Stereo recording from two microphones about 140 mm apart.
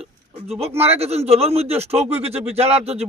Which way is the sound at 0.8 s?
50° right (ahead or behind).